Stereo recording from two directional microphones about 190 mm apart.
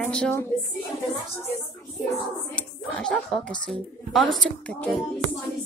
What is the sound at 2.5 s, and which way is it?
A child's voice, 5° left (ahead or behind).